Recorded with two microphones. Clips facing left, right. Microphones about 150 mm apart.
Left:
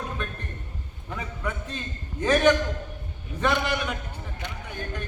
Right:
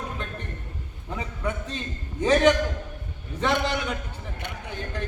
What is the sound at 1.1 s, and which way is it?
A man's voice, 20° right (ahead or behind).